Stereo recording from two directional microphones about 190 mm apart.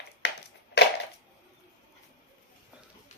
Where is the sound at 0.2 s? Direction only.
60° left (ahead or behind).